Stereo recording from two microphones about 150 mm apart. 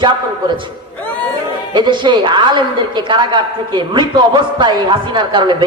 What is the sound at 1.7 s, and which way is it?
A woman's voice, 30° right (ahead or behind).